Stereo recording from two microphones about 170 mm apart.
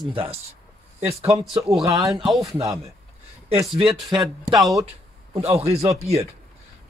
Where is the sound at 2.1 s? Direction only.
Centre (ahead or behind).